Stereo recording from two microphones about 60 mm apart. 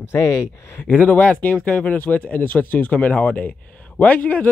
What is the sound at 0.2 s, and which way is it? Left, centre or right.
Speech, left.